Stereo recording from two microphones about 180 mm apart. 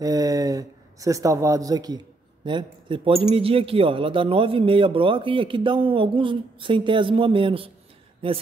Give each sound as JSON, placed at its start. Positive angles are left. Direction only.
{"t": 0.0, "sound": "a man's voice", "side_deg": -20}